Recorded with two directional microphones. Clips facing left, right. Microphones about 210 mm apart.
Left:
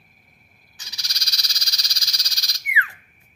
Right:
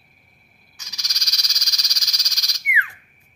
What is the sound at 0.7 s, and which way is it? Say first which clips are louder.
Frog: even; 30° left (ahead or behind).